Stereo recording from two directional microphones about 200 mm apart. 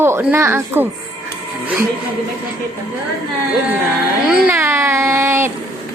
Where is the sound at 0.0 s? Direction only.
10° right (ahead or behind).